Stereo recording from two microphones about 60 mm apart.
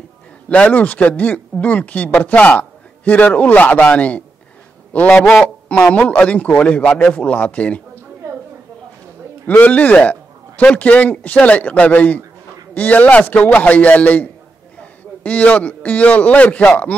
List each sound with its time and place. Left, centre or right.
0.7 s a man's voice: left
5.2 s a man's voice: centre
5.9 s speech: left
9.5 s a man's voice: left